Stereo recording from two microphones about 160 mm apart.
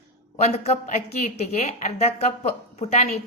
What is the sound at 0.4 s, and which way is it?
Speech, 40° left (ahead or behind).